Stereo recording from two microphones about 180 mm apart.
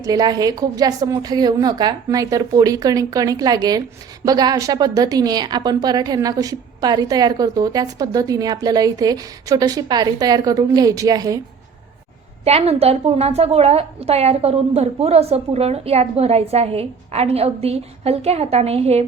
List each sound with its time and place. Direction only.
0.0 s a woman's voice: 20° right (ahead or behind)
12.5 s a woman's voice: 35° right (ahead or behind)